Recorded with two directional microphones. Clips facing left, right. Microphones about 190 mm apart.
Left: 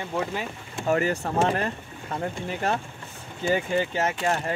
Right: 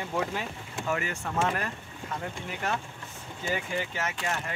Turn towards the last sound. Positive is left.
turn(degrees=35)  # may be behind; listen again after turning